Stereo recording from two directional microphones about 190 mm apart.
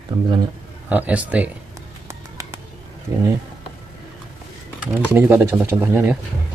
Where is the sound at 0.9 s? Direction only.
10° right (ahead or behind).